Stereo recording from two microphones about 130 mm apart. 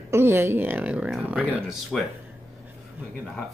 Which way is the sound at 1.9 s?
Centre (ahead or behind).